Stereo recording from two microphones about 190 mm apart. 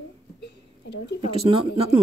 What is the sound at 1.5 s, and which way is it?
Speech, 30° right (ahead or behind).